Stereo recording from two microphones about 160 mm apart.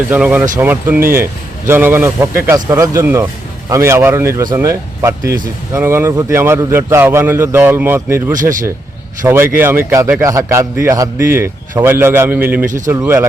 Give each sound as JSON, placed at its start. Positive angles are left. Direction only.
{"t": 0.1, "sound": "speech", "side_deg": -10}
{"t": 9.2, "sound": "speech", "side_deg": -15}
{"t": 12.6, "sound": "speech", "side_deg": -55}
{"t": 12.9, "sound": "speech", "side_deg": -15}